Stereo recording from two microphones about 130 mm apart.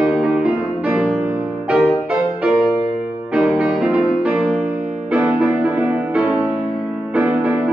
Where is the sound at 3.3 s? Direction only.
10° right (ahead or behind).